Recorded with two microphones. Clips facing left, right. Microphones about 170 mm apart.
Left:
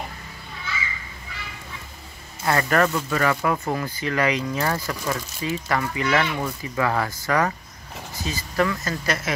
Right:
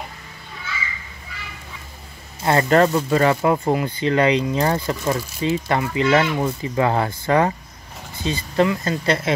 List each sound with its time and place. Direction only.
2.4 s speech: 25° right (ahead or behind)